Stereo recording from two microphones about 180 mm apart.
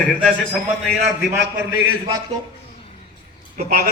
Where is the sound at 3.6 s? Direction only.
50° right (ahead or behind).